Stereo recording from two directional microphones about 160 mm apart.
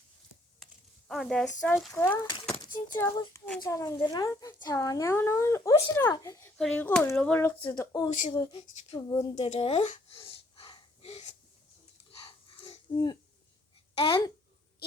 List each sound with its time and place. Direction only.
0.6 s a sound: centre (ahead or behind)
1.6 s speech: centre (ahead or behind)
1.9 s speech: 15° left (ahead or behind)
6.6 s speech: 5° left (ahead or behind)
7.8 s speech: 25° left (ahead or behind)
9.3 s speech: 40° left (ahead or behind)
10.1 s wheeze: 35° left (ahead or behind)
12.2 s wheeze: 30° left (ahead or behind)
13.9 s speech: 35° left (ahead or behind)